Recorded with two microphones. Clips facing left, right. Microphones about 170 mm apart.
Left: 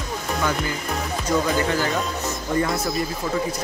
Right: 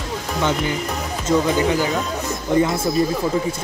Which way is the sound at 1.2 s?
15° right (ahead or behind).